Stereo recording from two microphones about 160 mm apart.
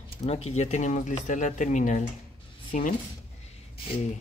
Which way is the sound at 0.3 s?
40° left (ahead or behind).